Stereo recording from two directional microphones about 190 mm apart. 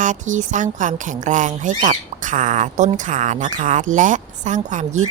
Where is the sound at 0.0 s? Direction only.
40° right (ahead or behind).